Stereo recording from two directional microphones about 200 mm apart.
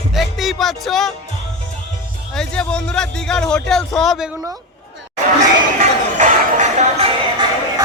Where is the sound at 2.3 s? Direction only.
5° left (ahead or behind).